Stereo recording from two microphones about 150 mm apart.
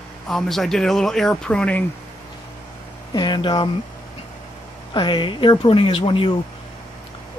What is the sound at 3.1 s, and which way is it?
Speech, 30° left (ahead or behind).